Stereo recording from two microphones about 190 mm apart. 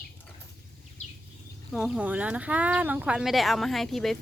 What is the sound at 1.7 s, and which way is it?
Speech, centre (ahead or behind).